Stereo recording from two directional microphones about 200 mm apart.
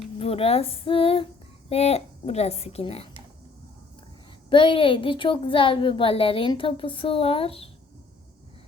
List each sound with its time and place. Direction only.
0.2 s a woman's voice: 30° left (ahead or behind)
4.4 s speech: 25° left (ahead or behind)